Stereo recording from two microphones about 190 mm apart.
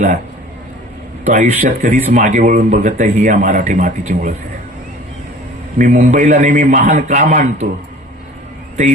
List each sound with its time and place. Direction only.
1.2 s a man's voice: 45° right (ahead or behind)
5.7 s a man's voice: 45° right (ahead or behind)